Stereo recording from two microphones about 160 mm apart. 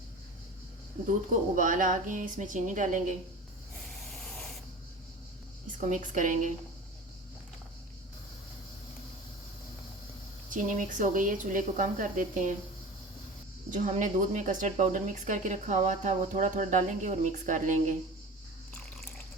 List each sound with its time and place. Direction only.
1.5 s speech: 55° right (ahead or behind)
5.8 s speech: 50° right (ahead or behind)
10.5 s speech: 55° right (ahead or behind)
13.7 s speech: 50° right (ahead or behind)